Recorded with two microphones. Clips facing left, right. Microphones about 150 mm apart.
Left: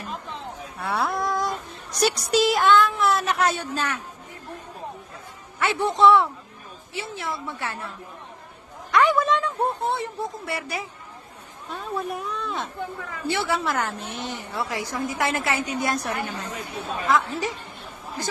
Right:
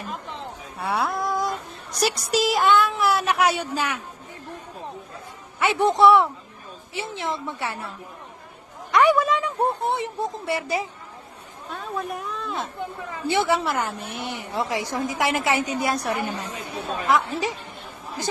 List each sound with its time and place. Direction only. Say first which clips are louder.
0.3 s a sound: even; 15° right (ahead or behind)
0.9 s a sound: even; centre (ahead or behind)
2.0 s a woman's voice: left 2 dB; centre (ahead or behind)
5.5 s a woman's voice: right 3 dB; 15° right (ahead or behind)
11.7 s speech: left 1 dB; centre (ahead or behind)
13.2 s a woman's voice: right 3 dB; 15° right (ahead or behind)